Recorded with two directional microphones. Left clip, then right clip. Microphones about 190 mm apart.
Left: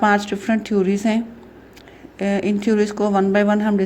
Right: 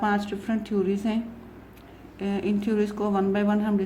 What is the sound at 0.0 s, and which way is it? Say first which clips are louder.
A woman's voice: left 9 dB; 35° left (ahead or behind).